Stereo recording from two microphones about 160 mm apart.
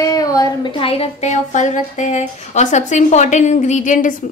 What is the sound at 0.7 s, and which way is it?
Speech, 35° left (ahead or behind).